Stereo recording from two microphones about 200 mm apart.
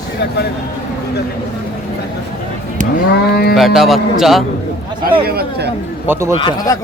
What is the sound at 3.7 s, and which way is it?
Speech, centre (ahead or behind).